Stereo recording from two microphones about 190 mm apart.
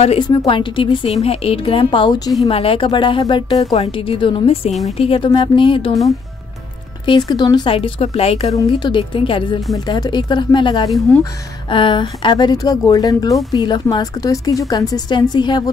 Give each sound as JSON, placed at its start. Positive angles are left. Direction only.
{"t": 0.0, "sound": "a woman's voice", "side_deg": 35}
{"t": 7.1, "sound": "speech", "side_deg": 25}
{"t": 10.9, "sound": "speech", "side_deg": 0}
{"t": 11.7, "sound": "speech", "side_deg": 25}